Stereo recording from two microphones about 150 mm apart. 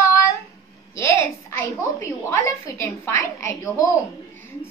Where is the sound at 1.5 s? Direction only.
20° left (ahead or behind).